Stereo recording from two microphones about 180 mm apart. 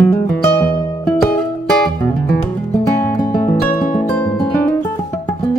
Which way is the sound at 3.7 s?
40° left (ahead or behind).